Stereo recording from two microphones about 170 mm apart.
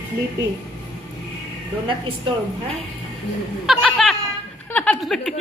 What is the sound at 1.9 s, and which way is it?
Speech, 30° right (ahead or behind).